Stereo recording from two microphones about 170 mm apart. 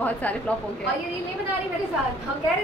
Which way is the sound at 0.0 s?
10° left (ahead or behind).